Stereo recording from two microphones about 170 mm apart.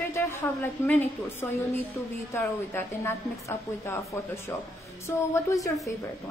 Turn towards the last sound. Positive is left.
turn(degrees=20)  # may be behind; listen again after turning